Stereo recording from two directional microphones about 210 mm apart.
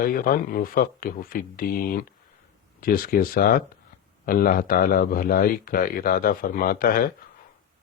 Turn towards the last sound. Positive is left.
turn(degrees=45)  # may be behind; listen again after turning